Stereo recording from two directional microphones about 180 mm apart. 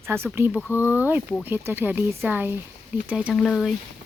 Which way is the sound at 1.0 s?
10° right (ahead or behind).